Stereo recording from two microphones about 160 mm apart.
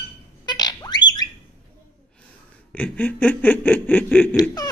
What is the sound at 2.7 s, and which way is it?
Snicker, 10° left (ahead or behind).